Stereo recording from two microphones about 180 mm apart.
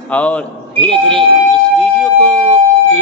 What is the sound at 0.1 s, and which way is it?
A man's voice, 5° left (ahead or behind).